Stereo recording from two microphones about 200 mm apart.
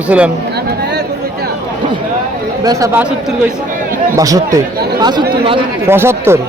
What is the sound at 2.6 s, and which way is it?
Speech, 15° right (ahead or behind).